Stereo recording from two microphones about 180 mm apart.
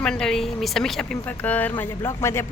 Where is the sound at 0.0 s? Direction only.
5° left (ahead or behind).